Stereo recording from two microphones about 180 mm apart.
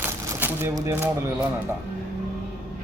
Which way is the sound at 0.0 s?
10° right (ahead or behind).